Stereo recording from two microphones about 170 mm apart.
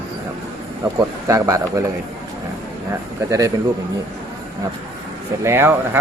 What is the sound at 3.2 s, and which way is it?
Speech, 20° right (ahead or behind).